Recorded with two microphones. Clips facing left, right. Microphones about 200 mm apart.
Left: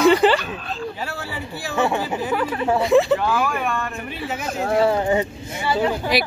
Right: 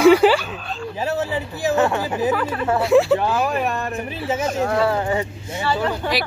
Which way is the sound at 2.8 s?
5° right (ahead or behind).